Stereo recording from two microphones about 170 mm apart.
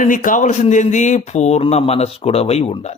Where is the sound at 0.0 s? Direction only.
50° left (ahead or behind).